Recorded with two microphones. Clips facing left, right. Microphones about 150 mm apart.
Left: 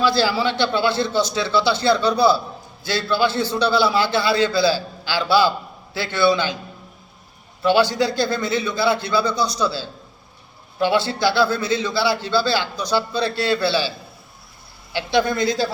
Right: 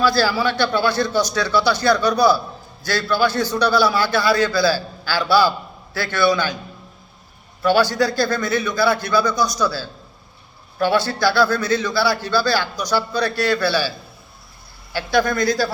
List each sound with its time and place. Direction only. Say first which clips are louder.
0.0 s a man's voice: right 1 dB; 20° left (ahead or behind)
7.6 s a man's voice: even; 20° left (ahead or behind)
15.3 s a man's voice: right 1 dB; 20° left (ahead or behind)